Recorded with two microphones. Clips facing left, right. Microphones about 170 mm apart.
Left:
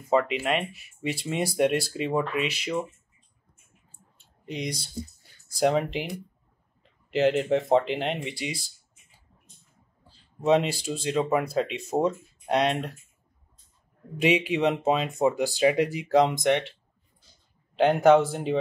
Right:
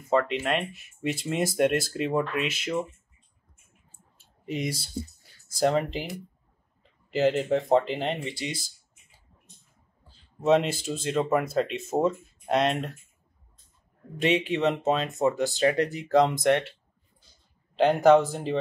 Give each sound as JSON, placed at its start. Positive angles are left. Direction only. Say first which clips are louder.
{"t": 0.1, "sound": "speech", "louder": "left 1 dB", "side_deg": 5}
{"t": 4.5, "sound": "speech", "louder": "right 2 dB", "side_deg": -5}
{"t": 10.0, "sound": "speech", "louder": "even", "side_deg": 0}
{"t": 14.2, "sound": "speech", "louder": "left 1 dB", "side_deg": 5}
{"t": 17.7, "sound": "speech", "louder": "even", "side_deg": 0}